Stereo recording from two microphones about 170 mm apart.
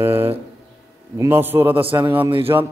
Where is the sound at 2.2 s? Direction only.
30° right (ahead or behind).